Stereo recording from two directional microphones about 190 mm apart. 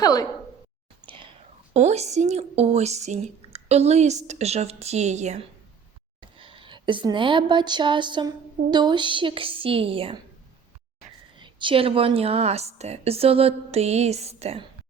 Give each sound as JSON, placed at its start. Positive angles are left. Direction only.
{"t": 0.0, "sound": "speech", "side_deg": 20}
{"t": 1.0, "sound": "whispering", "side_deg": -25}
{"t": 1.7, "sound": "a woman's voice", "side_deg": -35}
{"t": 11.3, "sound": "a woman's voice", "side_deg": -25}